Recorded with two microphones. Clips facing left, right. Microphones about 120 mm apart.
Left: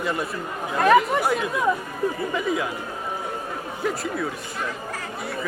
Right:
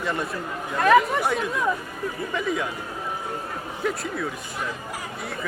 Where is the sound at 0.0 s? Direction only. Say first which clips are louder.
Left 1 dB; centre (ahead or behind).